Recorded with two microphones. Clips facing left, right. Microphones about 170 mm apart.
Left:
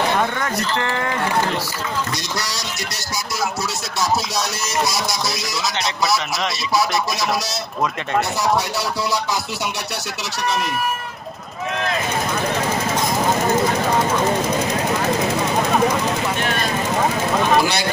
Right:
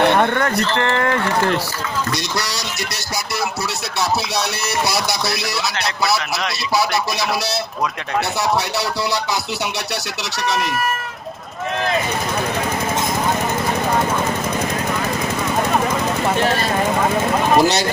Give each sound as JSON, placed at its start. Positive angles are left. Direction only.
{"t": 0.0, "sound": "speech", "side_deg": -60}
{"t": 2.3, "sound": "speech", "side_deg": -65}
{"t": 5.8, "sound": "speech", "side_deg": 0}
{"t": 17.6, "sound": "speech", "side_deg": -40}